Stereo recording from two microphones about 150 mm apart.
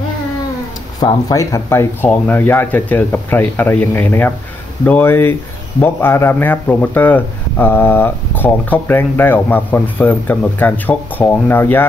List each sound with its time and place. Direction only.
0.9 s speech: 25° left (ahead or behind)